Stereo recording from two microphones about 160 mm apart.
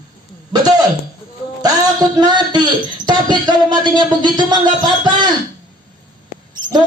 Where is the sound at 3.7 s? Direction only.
30° right (ahead or behind).